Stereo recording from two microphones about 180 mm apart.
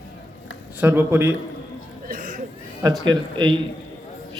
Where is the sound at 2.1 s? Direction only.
50° right (ahead or behind).